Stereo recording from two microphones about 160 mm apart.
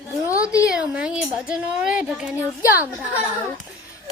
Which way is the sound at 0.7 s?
5° right (ahead or behind).